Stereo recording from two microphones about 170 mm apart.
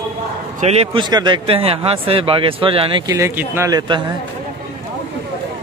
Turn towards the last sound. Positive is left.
turn(degrees=-25)  # may be behind; listen again after turning